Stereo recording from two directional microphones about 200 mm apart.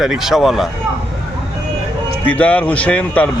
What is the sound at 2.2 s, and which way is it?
Speech, 5° left (ahead or behind).